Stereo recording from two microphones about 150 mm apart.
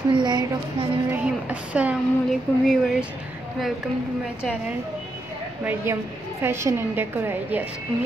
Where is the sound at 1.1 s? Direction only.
10° right (ahead or behind).